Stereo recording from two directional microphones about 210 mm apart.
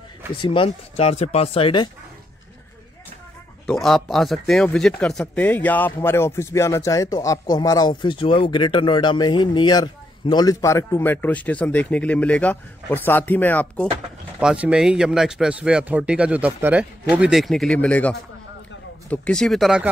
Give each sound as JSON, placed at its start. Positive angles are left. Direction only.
{"t": 0.5, "sound": "speech", "side_deg": 25}
{"t": 3.6, "sound": "speech", "side_deg": 0}
{"t": 14.4, "sound": "speech", "side_deg": -5}